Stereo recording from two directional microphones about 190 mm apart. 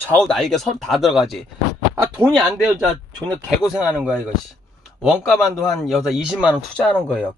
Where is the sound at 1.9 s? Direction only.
15° right (ahead or behind).